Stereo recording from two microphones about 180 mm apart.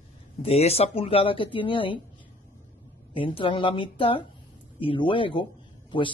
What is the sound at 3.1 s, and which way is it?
Speech, 30° left (ahead or behind).